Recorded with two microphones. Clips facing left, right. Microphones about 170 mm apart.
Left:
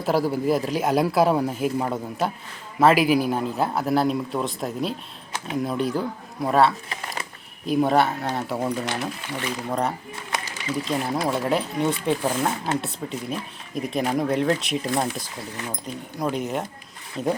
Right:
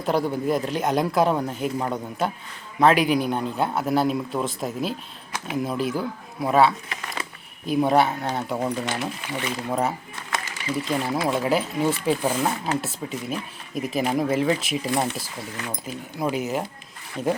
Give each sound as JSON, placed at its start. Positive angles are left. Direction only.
{"t": 0.0, "sound": "speech", "side_deg": 5}
{"t": 6.9, "sound": "a sound", "side_deg": 30}
{"t": 7.7, "sound": "speech", "side_deg": 0}